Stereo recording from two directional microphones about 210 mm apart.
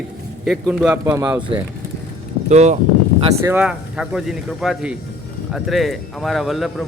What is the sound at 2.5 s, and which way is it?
Speech, 30° right (ahead or behind).